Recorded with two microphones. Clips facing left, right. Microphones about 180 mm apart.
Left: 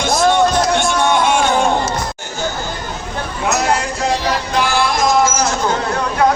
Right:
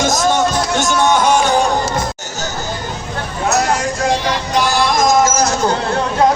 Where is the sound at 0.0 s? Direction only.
40° right (ahead or behind).